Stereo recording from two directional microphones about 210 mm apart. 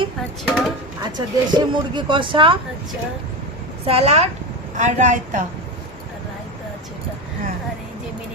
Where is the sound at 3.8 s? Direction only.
25° right (ahead or behind).